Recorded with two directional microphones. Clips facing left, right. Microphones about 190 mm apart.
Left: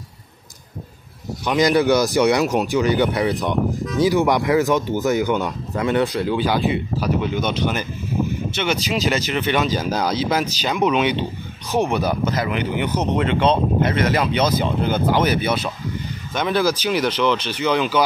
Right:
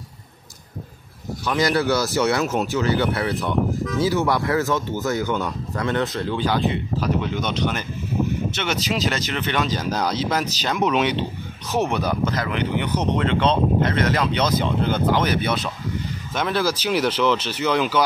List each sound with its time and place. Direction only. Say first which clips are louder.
1.4 s speech: left 4 dB; 15° left (ahead or behind); by 18.0 s centre (ahead or behind)